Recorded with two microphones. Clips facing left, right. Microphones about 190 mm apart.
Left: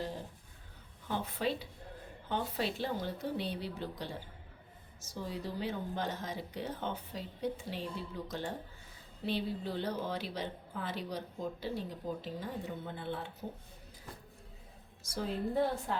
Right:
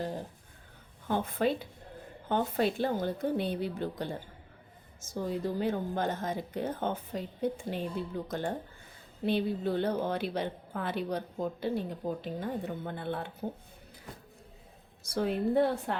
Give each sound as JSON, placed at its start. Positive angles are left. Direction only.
{"t": 1.0, "sound": "a woman's voice", "side_deg": -55}
{"t": 15.0, "sound": "a woman's voice", "side_deg": -60}